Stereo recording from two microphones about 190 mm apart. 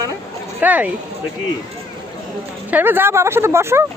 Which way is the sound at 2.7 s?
10° right (ahead or behind).